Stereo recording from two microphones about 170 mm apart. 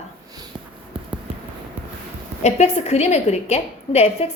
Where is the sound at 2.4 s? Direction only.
40° left (ahead or behind).